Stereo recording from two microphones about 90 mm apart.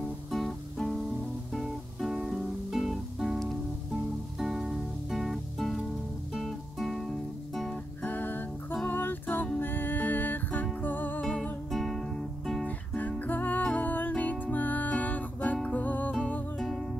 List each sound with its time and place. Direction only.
0.3 s guitar: 5° left (ahead or behind)
1.5 s music: 5° right (ahead or behind)
6.3 s guitar: centre (ahead or behind)
7.7 s music: 20° left (ahead or behind)
11.7 s music: centre (ahead or behind)
12.6 s music: 15° left (ahead or behind)
16.5 s music: centre (ahead or behind)